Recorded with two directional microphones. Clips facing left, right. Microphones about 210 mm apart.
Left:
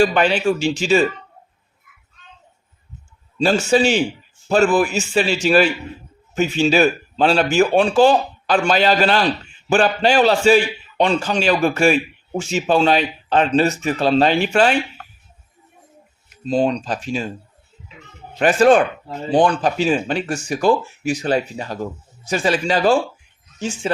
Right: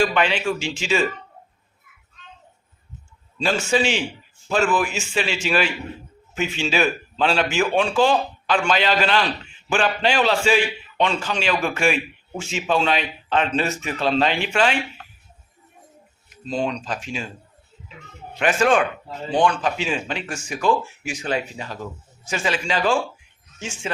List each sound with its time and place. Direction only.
0.0 s speech: 40° left (ahead or behind)
3.3 s speech: 40° left (ahead or behind)
16.5 s speech: 35° left (ahead or behind)
18.3 s speech: 35° left (ahead or behind)